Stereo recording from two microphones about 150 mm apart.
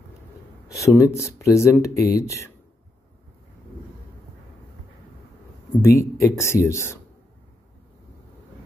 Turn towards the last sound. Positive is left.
turn(degrees=15)  # may be behind; listen again after turning